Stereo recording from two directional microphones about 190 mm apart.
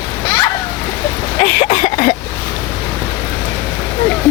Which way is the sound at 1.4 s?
35° left (ahead or behind).